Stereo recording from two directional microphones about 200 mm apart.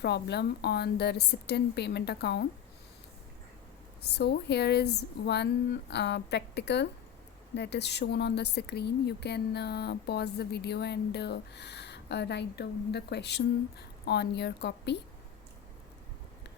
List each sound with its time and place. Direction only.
0.0 s speech: 55° left (ahead or behind)
4.0 s speech: 55° left (ahead or behind)